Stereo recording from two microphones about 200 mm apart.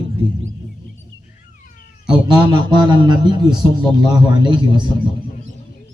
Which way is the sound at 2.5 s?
20° right (ahead or behind).